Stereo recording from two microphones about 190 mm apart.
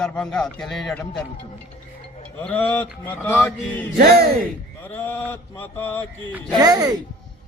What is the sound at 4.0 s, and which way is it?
Music, 55° right (ahead or behind).